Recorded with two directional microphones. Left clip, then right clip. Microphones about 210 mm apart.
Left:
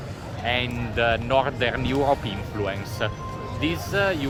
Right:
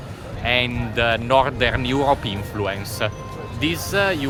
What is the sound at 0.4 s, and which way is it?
Speech, 50° right (ahead or behind).